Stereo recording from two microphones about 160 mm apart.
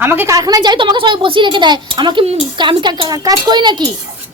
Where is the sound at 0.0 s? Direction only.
15° right (ahead or behind).